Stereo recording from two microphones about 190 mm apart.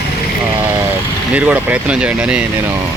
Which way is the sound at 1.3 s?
5° right (ahead or behind).